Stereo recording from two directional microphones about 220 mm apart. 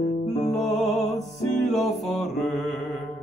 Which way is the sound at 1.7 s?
Centre (ahead or behind).